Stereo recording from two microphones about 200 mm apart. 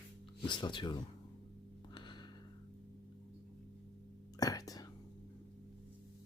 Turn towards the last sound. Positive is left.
turn(degrees=20)  # may be behind; listen again after turning